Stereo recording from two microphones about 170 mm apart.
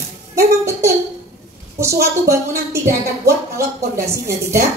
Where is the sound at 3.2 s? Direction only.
15° right (ahead or behind).